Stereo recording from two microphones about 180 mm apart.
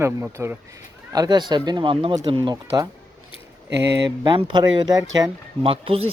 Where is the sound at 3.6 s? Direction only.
75° right (ahead or behind).